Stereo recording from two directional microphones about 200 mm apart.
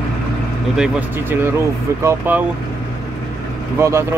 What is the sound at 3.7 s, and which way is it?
Speech, 15° right (ahead or behind).